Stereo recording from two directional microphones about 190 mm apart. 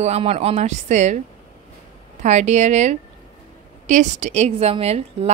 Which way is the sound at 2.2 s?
40° right (ahead or behind).